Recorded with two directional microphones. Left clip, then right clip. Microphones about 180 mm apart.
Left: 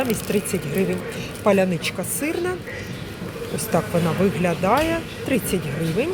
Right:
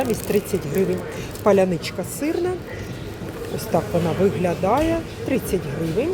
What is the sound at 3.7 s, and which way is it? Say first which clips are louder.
A woman's voice: right 1 dB; 5° right (ahead or behind).